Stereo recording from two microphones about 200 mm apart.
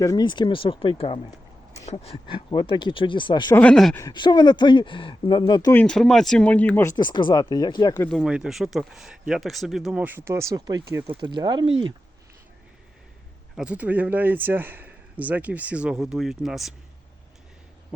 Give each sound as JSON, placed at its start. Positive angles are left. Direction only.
{"t": 0.0, "sound": "speech", "side_deg": 20}
{"t": 3.5, "sound": "speech", "side_deg": 5}
{"t": 3.9, "sound": "speech", "side_deg": 20}
{"t": 5.7, "sound": "speech", "side_deg": 5}
{"t": 7.9, "sound": "speech", "side_deg": 10}
{"t": 8.2, "sound": "speech", "side_deg": -5}
{"t": 13.6, "sound": "a man's voice", "side_deg": -5}